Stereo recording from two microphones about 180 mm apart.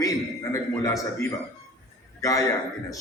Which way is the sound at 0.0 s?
20° left (ahead or behind).